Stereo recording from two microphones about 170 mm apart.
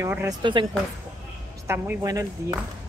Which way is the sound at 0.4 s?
30° right (ahead or behind).